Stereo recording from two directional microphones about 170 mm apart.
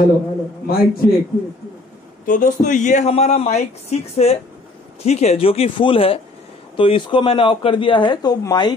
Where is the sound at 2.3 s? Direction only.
55° left (ahead or behind).